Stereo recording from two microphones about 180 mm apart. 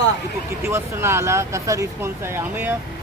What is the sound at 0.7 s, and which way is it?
Speech, 15° right (ahead or behind).